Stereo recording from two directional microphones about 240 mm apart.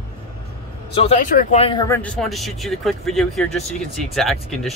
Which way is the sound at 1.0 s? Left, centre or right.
Left.